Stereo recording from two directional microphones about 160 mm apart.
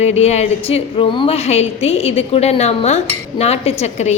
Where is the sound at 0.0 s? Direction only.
45° left (ahead or behind).